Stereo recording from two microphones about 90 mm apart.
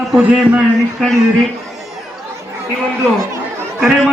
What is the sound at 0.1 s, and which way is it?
Speech, 10° right (ahead or behind).